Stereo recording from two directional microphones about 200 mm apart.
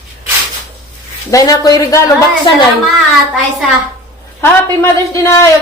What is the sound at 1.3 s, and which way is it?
A woman's voice, 15° left (ahead or behind).